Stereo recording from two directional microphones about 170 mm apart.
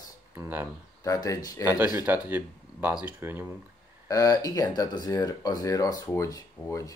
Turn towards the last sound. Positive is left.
turn(degrees=20)  # may be behind; listen again after turning